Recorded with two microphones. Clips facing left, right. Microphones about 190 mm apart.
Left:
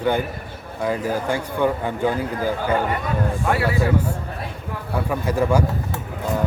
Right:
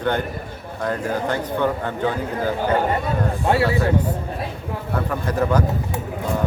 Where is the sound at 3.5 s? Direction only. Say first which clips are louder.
Right 4 dB; 25° right (ahead or behind).